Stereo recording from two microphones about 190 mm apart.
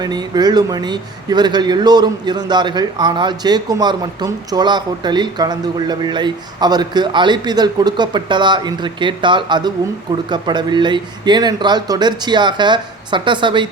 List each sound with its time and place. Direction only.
0.0 s a man's voice: 20° right (ahead or behind)